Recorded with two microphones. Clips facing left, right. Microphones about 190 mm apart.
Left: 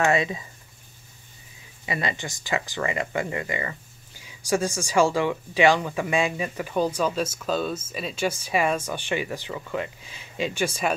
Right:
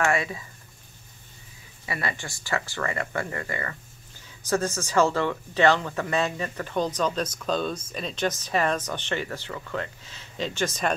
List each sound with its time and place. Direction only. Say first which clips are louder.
0.0 s speech: left 3 dB; 20° left (ahead or behind)
1.9 s speech: left 3 dB; 20° left (ahead or behind)